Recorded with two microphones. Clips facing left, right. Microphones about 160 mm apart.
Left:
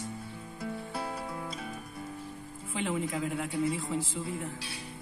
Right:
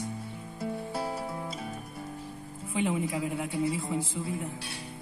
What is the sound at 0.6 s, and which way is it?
Music, 30° right (ahead or behind).